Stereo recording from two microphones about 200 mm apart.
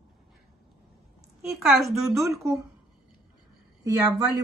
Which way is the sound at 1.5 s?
Centre (ahead or behind).